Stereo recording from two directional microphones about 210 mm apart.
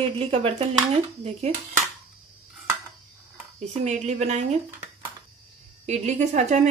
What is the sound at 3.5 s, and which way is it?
Speech, 30° right (ahead or behind).